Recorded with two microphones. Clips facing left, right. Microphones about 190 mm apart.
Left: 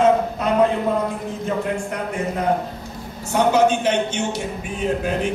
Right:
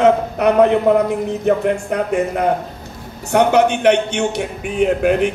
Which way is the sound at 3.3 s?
65° right (ahead or behind).